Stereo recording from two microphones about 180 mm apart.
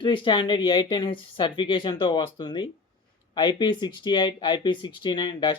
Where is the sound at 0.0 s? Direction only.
25° left (ahead or behind).